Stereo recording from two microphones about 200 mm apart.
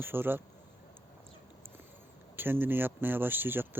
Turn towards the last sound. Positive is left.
turn(degrees=-10)  # may be behind; listen again after turning